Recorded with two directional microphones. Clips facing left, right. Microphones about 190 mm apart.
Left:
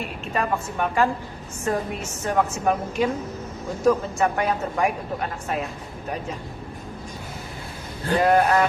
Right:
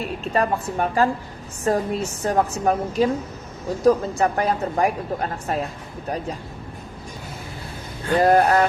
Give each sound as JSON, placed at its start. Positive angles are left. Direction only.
{"t": 0.3, "sound": "a woman's voice", "side_deg": -35}
{"t": 8.1, "sound": "a woman's voice", "side_deg": -40}